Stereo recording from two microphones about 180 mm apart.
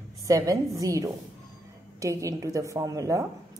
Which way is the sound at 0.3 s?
20° right (ahead or behind).